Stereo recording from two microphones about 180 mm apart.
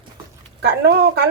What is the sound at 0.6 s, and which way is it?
Speech, 60° right (ahead or behind).